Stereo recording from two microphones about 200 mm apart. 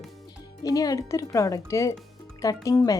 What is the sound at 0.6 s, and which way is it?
Speech, 20° left (ahead or behind).